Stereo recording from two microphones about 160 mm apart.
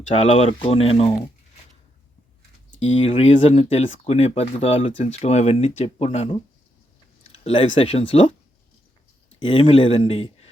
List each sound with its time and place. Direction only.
0.1 s speech: 40° left (ahead or behind)
2.8 s speech: 45° left (ahead or behind)
7.4 s speech: 40° left (ahead or behind)
9.4 s speech: 35° left (ahead or behind)